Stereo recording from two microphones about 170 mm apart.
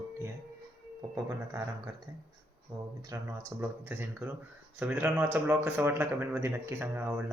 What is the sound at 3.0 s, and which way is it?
Speech, 15° right (ahead or behind).